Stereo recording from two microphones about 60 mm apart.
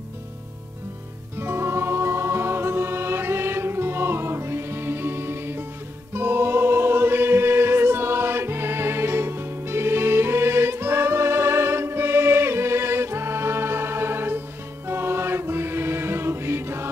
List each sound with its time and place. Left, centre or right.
1.4 s music: right
14.9 s choir: right